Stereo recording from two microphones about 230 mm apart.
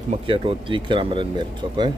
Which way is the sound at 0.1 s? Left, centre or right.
Right.